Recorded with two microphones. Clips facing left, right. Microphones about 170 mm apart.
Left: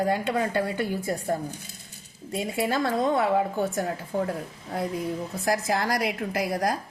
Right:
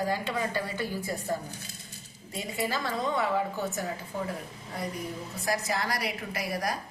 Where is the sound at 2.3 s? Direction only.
65° left (ahead or behind).